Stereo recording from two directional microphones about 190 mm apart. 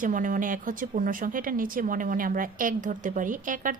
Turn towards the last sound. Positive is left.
turn(degrees=-45)  # may be behind; listen again after turning